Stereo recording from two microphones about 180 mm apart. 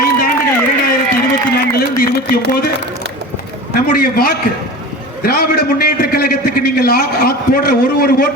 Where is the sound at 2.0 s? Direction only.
55° left (ahead or behind).